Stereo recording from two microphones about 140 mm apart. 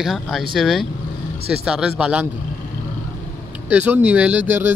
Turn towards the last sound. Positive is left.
turn(degrees=-15)  # may be behind; listen again after turning